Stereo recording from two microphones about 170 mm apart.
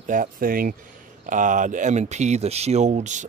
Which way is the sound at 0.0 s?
50° right (ahead or behind).